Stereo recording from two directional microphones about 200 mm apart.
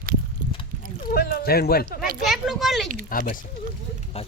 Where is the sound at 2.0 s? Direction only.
Centre (ahead or behind).